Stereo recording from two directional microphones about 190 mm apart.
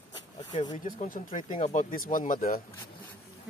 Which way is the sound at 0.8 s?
45° left (ahead or behind).